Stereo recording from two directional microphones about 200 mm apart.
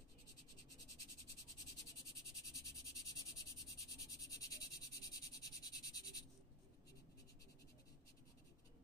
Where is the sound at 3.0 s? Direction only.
15° left (ahead or behind).